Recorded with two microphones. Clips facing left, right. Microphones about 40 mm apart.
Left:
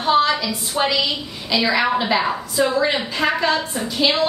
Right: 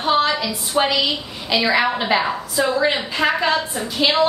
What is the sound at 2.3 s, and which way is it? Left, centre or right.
Speech, centre.